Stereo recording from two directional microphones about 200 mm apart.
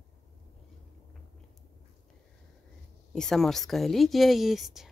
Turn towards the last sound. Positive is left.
turn(degrees=0)  # may be behind; listen again after turning